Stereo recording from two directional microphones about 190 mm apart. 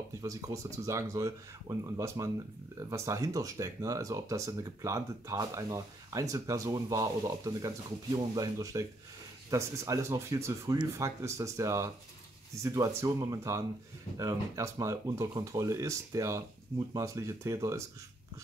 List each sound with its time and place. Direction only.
0.2 s speech: 15° right (ahead or behind)